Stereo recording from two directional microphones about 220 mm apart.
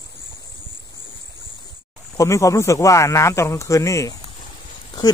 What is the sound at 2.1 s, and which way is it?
Speech, 15° left (ahead or behind).